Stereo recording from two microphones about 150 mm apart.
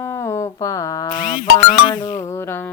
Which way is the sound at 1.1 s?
65° left (ahead or behind).